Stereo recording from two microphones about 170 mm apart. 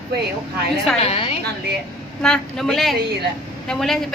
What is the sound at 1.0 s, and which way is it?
Speech, 35° left (ahead or behind).